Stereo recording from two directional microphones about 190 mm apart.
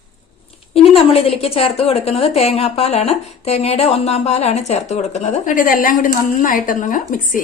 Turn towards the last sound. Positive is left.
turn(degrees=45)  # may be behind; listen again after turning